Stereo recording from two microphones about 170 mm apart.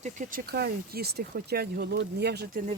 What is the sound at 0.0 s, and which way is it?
Speech, 50° right (ahead or behind).